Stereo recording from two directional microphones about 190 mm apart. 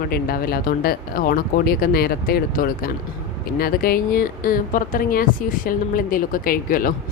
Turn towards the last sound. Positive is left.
turn(degrees=45)  # may be behind; listen again after turning